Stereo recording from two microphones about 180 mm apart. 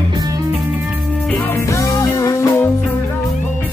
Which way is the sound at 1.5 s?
15° left (ahead or behind).